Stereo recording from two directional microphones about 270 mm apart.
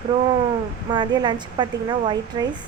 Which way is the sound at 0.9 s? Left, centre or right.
Centre.